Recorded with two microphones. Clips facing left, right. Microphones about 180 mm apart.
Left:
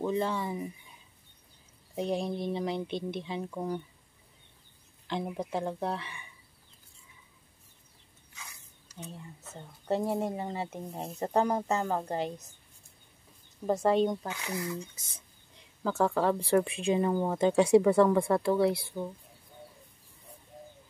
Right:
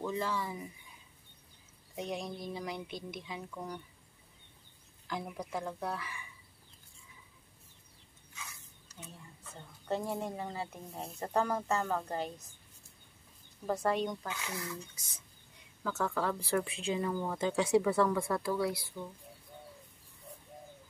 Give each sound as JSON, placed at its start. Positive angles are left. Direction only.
{"t": 0.0, "sound": "speech", "side_deg": 25}
{"t": 2.0, "sound": "speech", "side_deg": 30}
{"t": 5.0, "sound": "speech", "side_deg": 25}
{"t": 9.5, "sound": "speech", "side_deg": 30}
{"t": 13.7, "sound": "speech", "side_deg": 25}